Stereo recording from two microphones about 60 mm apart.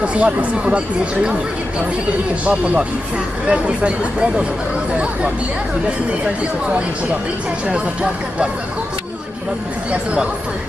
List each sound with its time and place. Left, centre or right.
0.0 s speech: right
2.4 s speech: right
7.7 s speech: centre